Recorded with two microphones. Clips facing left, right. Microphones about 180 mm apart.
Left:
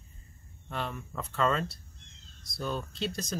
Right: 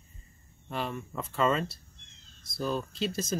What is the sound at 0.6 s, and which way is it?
Speech, centre (ahead or behind).